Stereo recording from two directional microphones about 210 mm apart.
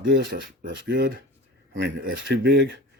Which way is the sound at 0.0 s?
45° right (ahead or behind).